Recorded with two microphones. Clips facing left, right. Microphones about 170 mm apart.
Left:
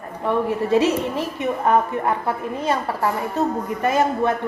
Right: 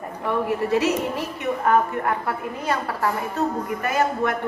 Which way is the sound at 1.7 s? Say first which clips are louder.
Left 1 dB; 20° left (ahead or behind).